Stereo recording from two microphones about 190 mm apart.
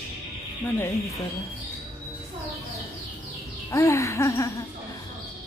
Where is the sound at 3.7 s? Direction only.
15° left (ahead or behind).